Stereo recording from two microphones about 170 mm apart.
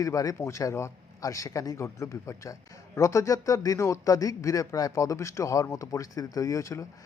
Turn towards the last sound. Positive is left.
turn(degrees=20)  # may be behind; listen again after turning